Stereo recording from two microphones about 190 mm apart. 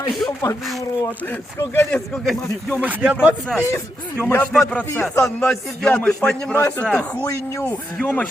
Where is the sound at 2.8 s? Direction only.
10° right (ahead or behind).